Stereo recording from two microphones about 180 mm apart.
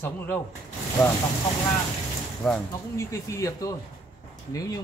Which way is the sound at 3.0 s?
15° left (ahead or behind).